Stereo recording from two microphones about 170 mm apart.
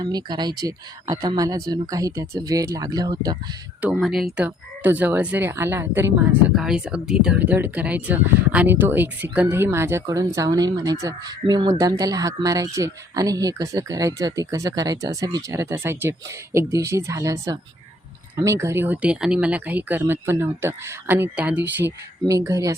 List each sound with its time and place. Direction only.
0.0 s speech: 25° right (ahead or behind)
3.8 s speech: 5° right (ahead or behind)